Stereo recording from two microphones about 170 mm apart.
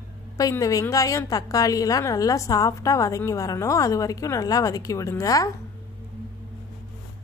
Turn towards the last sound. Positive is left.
turn(degrees=20)  # may be behind; listen again after turning